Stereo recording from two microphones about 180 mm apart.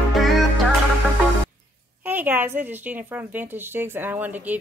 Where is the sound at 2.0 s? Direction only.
10° right (ahead or behind).